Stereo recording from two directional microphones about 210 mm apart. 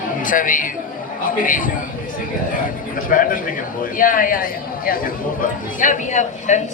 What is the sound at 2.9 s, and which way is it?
A man's voice, 40° left (ahead or behind).